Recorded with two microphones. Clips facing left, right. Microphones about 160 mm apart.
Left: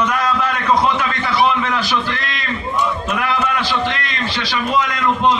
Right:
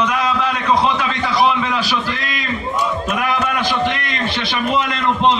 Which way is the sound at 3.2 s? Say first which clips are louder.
Even; 15° right (ahead or behind).